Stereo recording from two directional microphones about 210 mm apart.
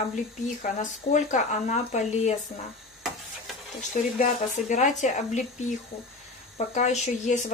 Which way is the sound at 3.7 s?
35° left (ahead or behind).